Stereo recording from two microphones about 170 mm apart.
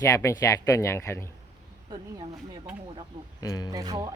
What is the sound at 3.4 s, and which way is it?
Speech, 20° left (ahead or behind).